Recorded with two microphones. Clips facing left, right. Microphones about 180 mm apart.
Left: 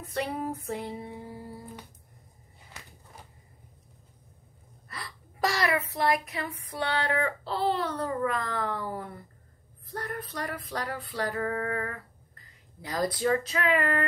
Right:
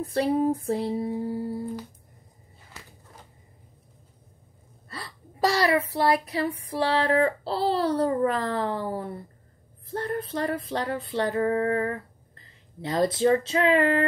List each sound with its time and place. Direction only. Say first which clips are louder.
0.0 s female singing: right 9 dB; 35° right (ahead or behind)
4.8 s speech: right 3 dB; 30° right (ahead or behind)
9.8 s female singing: right 7 dB; 25° right (ahead or behind)